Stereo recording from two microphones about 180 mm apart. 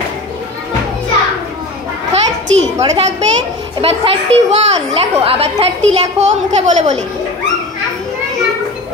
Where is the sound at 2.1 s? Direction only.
35° right (ahead or behind).